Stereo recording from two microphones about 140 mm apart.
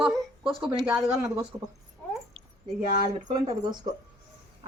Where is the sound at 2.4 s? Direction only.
40° right (ahead or behind).